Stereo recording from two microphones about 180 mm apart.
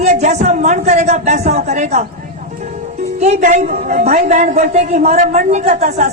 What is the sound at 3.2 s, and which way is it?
A woman's voice, 40° right (ahead or behind).